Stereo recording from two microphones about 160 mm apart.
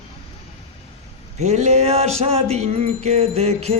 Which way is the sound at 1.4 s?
45° right (ahead or behind).